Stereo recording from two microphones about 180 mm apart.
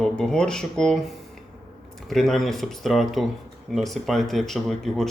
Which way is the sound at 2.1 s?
Centre (ahead or behind).